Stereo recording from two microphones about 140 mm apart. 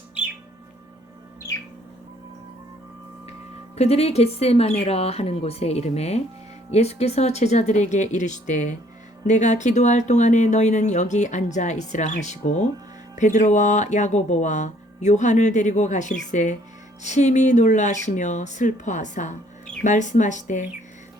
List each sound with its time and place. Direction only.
3.8 s speech: 50° left (ahead or behind)